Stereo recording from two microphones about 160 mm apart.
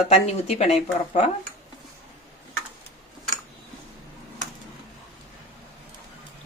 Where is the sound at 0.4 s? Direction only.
45° left (ahead or behind).